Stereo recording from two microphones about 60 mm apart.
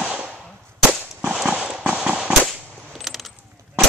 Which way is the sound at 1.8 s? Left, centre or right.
Right.